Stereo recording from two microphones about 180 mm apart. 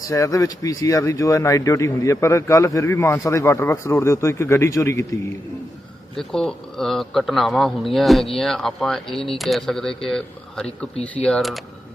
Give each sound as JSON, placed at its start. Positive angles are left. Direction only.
{"t": 0.1, "sound": "speech", "side_deg": 20}
{"t": 6.1, "sound": "speech", "side_deg": 5}